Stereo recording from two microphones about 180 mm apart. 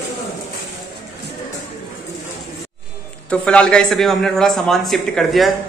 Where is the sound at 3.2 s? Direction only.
5° left (ahead or behind).